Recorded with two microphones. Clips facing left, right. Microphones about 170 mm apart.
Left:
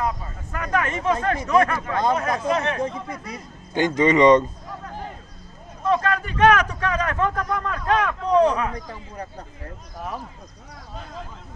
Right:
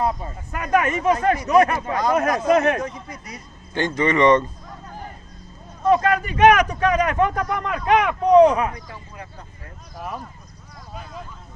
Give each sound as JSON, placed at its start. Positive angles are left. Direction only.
{"t": 0.5, "sound": "speech", "side_deg": -15}
{"t": 2.2, "sound": "speech", "side_deg": 25}
{"t": 3.7, "sound": "speech", "side_deg": 15}
{"t": 5.9, "sound": "speech", "side_deg": -15}
{"t": 8.7, "sound": "speech", "side_deg": 40}
{"t": 9.9, "sound": "speech", "side_deg": 0}